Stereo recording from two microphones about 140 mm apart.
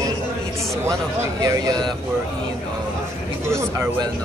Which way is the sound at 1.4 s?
25° right (ahead or behind).